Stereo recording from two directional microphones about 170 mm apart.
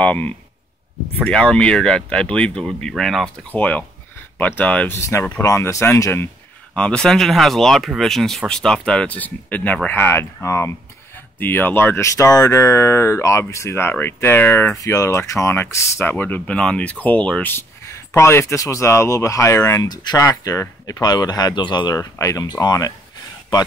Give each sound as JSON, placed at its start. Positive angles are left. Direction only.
{"t": 0.0, "sound": "speech", "side_deg": 10}
{"t": 6.7, "sound": "speech", "side_deg": 5}